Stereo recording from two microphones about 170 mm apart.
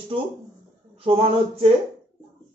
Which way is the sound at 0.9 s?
35° right (ahead or behind).